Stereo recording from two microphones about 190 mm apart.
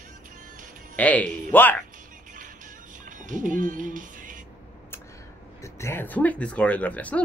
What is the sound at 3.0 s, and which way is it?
Music, 45° right (ahead or behind).